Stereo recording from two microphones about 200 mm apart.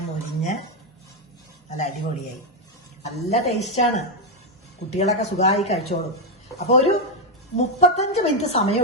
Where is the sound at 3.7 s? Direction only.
35° left (ahead or behind).